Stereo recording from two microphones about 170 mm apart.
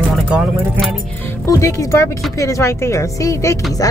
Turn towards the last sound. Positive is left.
turn(degrees=20)  # may be behind; listen again after turning